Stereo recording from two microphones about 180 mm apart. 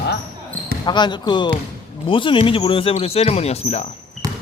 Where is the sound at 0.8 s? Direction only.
25° left (ahead or behind).